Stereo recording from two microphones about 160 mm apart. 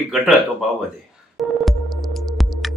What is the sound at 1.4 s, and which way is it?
Music, centre (ahead or behind).